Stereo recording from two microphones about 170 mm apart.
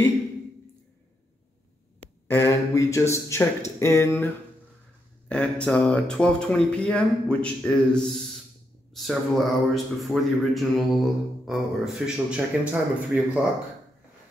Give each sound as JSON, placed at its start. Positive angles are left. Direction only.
{"t": 2.2, "sound": "speech", "side_deg": 15}
{"t": 5.3, "sound": "speech", "side_deg": 5}